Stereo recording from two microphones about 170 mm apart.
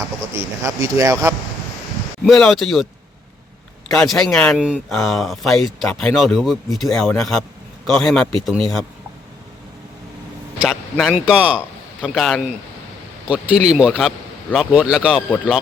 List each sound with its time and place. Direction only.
0.3 s speech: 15° right (ahead or behind)
2.2 s speech: centre (ahead or behind)
3.8 s speech: centre (ahead or behind)
10.6 s speech: centre (ahead or behind)